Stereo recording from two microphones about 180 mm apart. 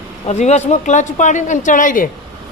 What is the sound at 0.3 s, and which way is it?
A man's voice, 40° left (ahead or behind).